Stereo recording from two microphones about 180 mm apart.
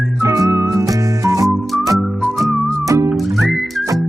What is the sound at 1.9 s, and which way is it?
Whistling, centre (ahead or behind).